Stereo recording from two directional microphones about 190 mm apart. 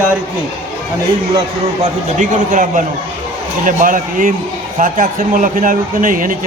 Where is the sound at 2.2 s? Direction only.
45° right (ahead or behind).